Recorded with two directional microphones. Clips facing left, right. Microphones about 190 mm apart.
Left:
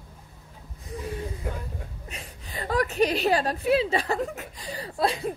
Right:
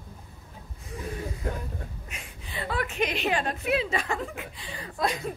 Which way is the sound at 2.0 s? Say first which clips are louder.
Left 2 dB; 35° left (ahead or behind).